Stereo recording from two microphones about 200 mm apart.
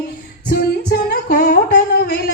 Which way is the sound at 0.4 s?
50° left (ahead or behind).